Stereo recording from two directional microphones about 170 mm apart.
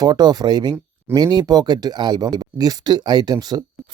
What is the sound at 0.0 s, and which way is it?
Speech, 25° right (ahead or behind).